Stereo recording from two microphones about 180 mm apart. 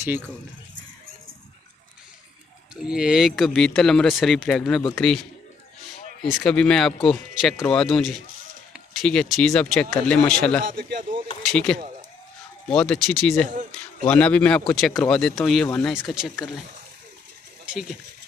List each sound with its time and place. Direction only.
2.7 s speech: 5° right (ahead or behind)
6.2 s speech: centre (ahead or behind)
10.7 s speech: 50° right (ahead or behind)
11.4 s speech: 5° left (ahead or behind)
13.5 s speech: 45° right (ahead or behind)
14.0 s speech: 5° left (ahead or behind)
17.6 s speech: 5° right (ahead or behind)